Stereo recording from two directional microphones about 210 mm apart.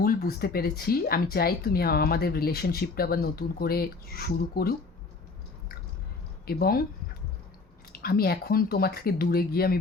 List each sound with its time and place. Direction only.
0.0 s speech: 45° left (ahead or behind)
6.4 s speech: 45° left (ahead or behind)
8.0 s speech: 45° left (ahead or behind)